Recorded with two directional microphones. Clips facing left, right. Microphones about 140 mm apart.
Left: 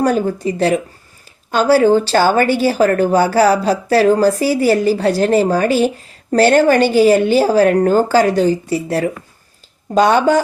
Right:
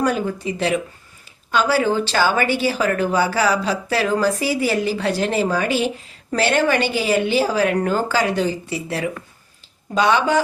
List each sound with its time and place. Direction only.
0.0 s a woman's voice: 40° left (ahead or behind)